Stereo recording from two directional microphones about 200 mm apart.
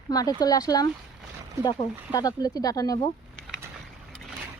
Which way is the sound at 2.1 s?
20° left (ahead or behind).